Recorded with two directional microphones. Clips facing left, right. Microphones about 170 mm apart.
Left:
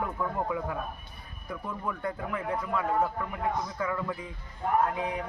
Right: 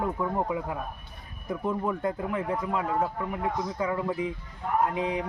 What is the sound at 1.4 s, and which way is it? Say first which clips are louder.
A man's voice: right 7 dB; 25° right (ahead or behind).